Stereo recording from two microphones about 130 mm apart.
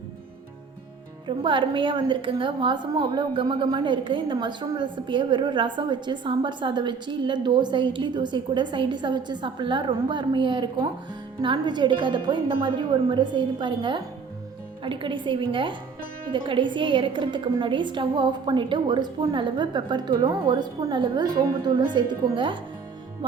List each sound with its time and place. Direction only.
1.4 s a woman's voice: 40° right (ahead or behind)
20.5 s a woman's voice: 35° right (ahead or behind)